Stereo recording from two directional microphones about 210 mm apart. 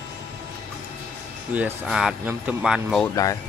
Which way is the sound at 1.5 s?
5° right (ahead or behind).